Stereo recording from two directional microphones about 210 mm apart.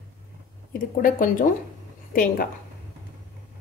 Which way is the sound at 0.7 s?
40° left (ahead or behind).